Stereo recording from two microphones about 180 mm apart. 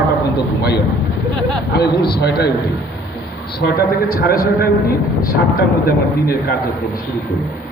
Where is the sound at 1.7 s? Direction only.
65° left (ahead or behind).